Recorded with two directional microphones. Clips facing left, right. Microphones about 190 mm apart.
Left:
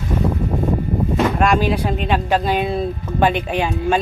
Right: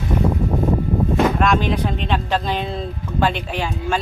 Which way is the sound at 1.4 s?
10° left (ahead or behind).